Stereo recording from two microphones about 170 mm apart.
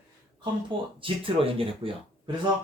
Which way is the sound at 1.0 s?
30° right (ahead or behind).